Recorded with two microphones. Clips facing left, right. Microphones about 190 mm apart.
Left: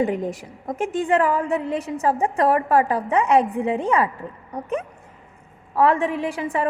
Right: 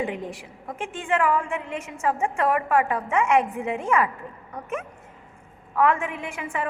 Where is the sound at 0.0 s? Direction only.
40° left (ahead or behind).